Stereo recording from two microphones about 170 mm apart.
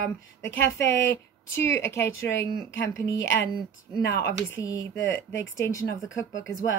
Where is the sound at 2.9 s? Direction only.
20° left (ahead or behind).